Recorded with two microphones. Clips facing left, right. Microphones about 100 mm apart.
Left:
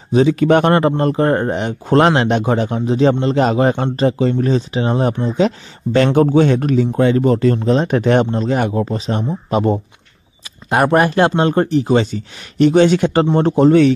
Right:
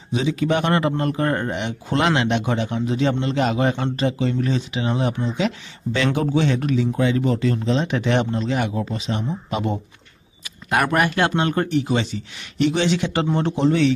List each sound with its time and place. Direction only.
0.1 s speech: 50° left (ahead or behind)